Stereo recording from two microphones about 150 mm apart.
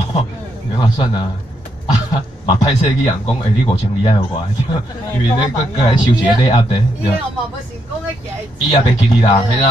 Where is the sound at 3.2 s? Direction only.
35° left (ahead or behind).